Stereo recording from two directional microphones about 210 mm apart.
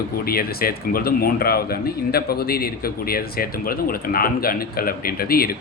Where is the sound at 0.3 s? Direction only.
45° left (ahead or behind).